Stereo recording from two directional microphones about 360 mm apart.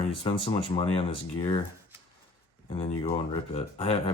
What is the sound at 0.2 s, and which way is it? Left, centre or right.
Speech, centre.